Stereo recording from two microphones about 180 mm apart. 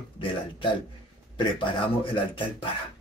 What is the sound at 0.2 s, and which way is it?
A man's voice, 25° left (ahead or behind).